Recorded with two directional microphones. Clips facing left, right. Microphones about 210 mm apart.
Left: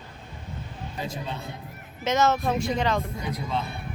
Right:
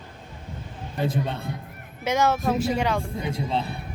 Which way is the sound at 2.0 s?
10° right (ahead or behind).